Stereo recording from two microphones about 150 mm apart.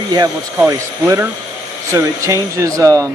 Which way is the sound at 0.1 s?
25° right (ahead or behind).